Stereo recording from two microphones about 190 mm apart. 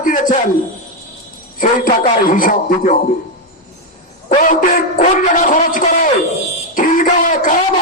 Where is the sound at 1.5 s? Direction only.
45° left (ahead or behind).